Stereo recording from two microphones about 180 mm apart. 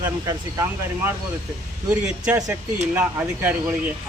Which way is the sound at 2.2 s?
10° right (ahead or behind).